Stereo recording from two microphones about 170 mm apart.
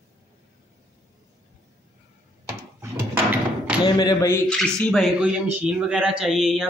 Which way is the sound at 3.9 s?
25° left (ahead or behind).